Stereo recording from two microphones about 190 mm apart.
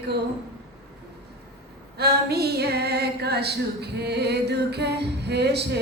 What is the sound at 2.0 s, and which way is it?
Female singing, 55° right (ahead or behind).